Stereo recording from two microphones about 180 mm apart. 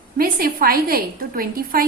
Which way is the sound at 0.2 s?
55° right (ahead or behind).